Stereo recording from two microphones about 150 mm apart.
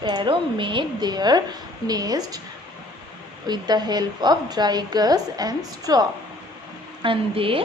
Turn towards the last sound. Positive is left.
turn(degrees=-35)  # may be behind; listen again after turning